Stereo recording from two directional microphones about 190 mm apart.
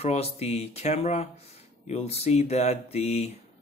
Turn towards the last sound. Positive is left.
turn(degrees=35)  # may be behind; listen again after turning